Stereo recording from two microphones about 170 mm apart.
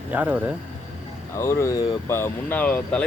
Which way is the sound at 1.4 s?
15° left (ahead or behind).